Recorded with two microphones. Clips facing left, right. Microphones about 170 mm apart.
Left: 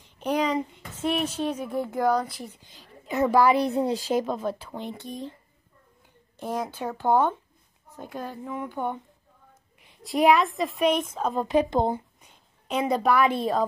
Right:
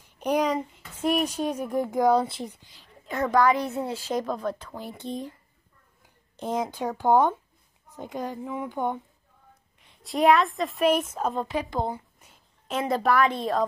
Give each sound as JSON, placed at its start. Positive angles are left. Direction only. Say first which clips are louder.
{"t": 0.0, "sound": "a sound", "louder": "right 1 dB", "side_deg": -10}
{"t": 0.9, "sound": "speech", "louder": "right 2 dB", "side_deg": -10}
{"t": 2.1, "sound": "speech", "louder": "right 3 dB", "side_deg": -25}
{"t": 3.3, "sound": "a woman's voice", "louder": "left 1 dB", "side_deg": 10}
{"t": 4.1, "sound": "a woman's voice", "louder": "left 2 dB", "side_deg": 5}
{"t": 4.9, "sound": "speech", "louder": "right 4 dB", "side_deg": -20}
{"t": 6.3, "sound": "speech", "louder": "right 2 dB", "side_deg": -20}
{"t": 9.8, "sound": "a woman's voice", "louder": "even", "side_deg": 0}
{"t": 11.4, "sound": "speech", "louder": "left 6 dB", "side_deg": 20}
{"t": 12.2, "sound": "a woman's voice", "louder": "left 1 dB", "side_deg": 0}